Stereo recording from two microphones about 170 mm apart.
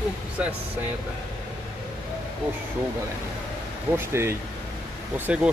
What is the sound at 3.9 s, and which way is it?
Speech, 15° right (ahead or behind).